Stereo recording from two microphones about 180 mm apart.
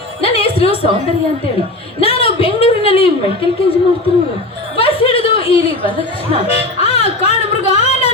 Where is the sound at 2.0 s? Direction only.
30° left (ahead or behind).